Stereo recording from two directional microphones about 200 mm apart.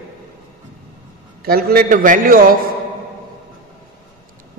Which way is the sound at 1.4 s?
50° right (ahead or behind).